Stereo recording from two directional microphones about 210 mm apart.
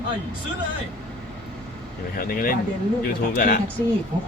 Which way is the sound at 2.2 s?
45° left (ahead or behind).